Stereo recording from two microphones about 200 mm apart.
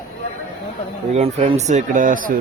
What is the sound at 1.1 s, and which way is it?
Speech, 30° right (ahead or behind).